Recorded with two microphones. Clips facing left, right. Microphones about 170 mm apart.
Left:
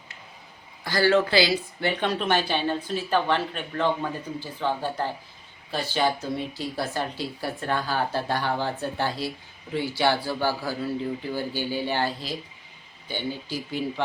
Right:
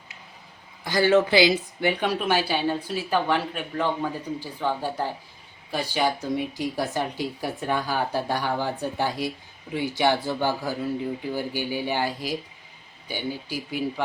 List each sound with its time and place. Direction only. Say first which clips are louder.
0.9 s speech: right 2 dB; 20° right (ahead or behind)